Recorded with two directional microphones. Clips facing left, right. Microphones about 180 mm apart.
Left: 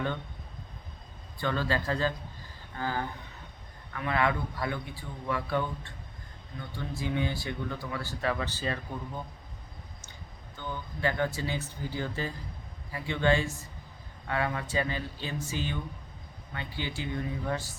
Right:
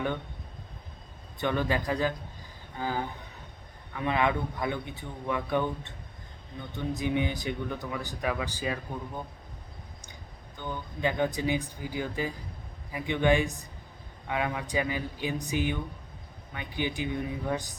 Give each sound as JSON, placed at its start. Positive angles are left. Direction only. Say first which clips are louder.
{"t": 1.4, "sound": "a man's voice", "louder": "right 2 dB", "side_deg": -15}
{"t": 10.6, "sound": "speech", "louder": "right 1 dB", "side_deg": -15}